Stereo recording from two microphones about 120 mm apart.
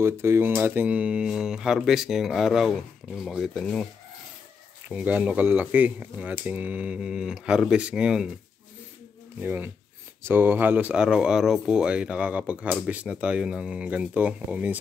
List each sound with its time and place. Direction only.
0.0 s speech: 20° right (ahead or behind); by 3.8 s 5° left (ahead or behind)
4.8 s speech: 10° right (ahead or behind)
9.4 s speech: 15° right (ahead or behind)